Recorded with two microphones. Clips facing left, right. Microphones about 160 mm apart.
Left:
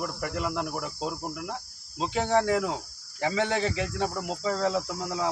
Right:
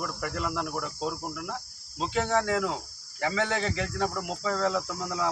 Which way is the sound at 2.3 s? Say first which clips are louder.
Left 4 dB; 20° left (ahead or behind).